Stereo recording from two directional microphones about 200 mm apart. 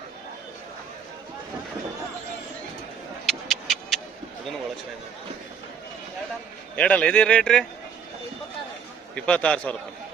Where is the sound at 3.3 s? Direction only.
Centre (ahead or behind).